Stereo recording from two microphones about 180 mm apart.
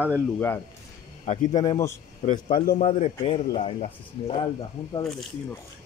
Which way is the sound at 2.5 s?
50° left (ahead or behind).